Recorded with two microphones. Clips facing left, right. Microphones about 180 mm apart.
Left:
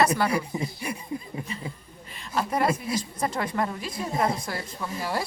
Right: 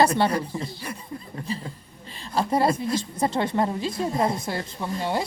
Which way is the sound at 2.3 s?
30° right (ahead or behind).